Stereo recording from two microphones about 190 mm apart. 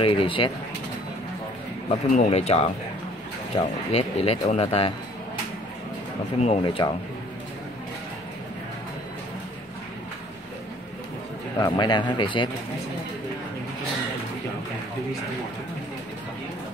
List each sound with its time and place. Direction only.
0.0 s a man's voice: 30° left (ahead or behind)
2.1 s speech: 35° left (ahead or behind)
6.3 s speech: 35° left (ahead or behind)
11.6 s a man's voice: 25° left (ahead or behind)